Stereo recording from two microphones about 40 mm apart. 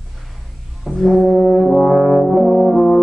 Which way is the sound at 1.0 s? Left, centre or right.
Centre.